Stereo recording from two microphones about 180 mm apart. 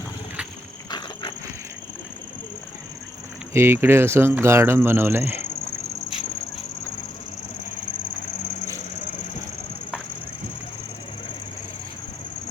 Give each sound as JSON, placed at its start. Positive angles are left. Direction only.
{"t": 0.9, "sound": "walk", "side_deg": 25}
{"t": 3.5, "sound": "speech", "side_deg": -15}